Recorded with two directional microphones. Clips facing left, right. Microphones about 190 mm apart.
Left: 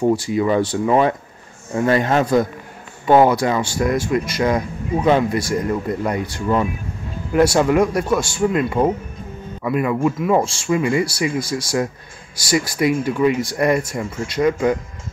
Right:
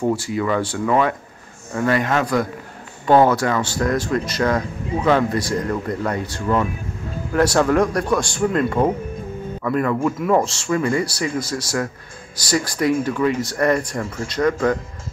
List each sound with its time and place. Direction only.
0.0 s speech: 20° left (ahead or behind)
3.1 s speech: 15° left (ahead or behind)